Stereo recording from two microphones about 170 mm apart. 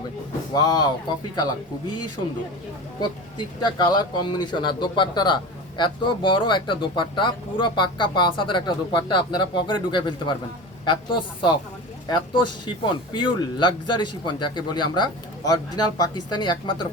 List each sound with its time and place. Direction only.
0.5 s a man's voice: 25° left (ahead or behind)
3.0 s a man's voice: 25° left (ahead or behind)